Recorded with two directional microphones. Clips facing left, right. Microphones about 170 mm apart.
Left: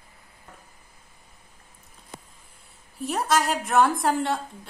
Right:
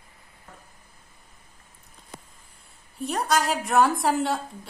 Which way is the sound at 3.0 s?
Centre (ahead or behind).